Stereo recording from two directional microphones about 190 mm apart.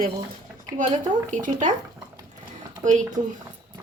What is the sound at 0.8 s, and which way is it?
Speech, 40° right (ahead or behind).